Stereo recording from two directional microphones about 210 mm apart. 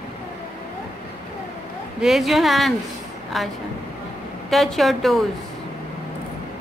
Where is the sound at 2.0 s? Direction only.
Centre (ahead or behind).